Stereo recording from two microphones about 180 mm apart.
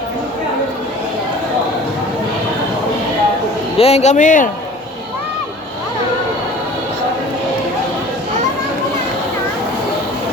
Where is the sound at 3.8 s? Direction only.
35° left (ahead or behind).